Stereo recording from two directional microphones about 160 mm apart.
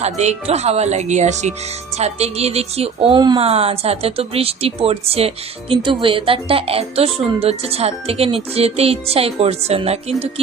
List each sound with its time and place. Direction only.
0.0 s speech: 45° right (ahead or behind)